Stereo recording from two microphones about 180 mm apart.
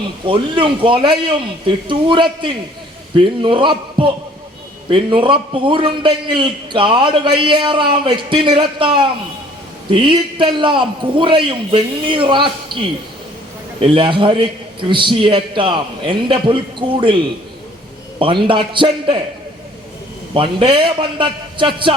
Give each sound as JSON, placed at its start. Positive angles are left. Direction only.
{"t": 0.3, "sound": "a man's voice", "side_deg": -30}
{"t": 13.8, "sound": "a man's voice", "side_deg": -30}
{"t": 18.2, "sound": "a man's voice", "side_deg": -25}
{"t": 20.3, "sound": "a man's voice", "side_deg": -30}